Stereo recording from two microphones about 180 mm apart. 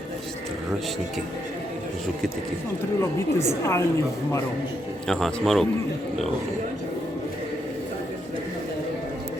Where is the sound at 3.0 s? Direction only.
15° left (ahead or behind).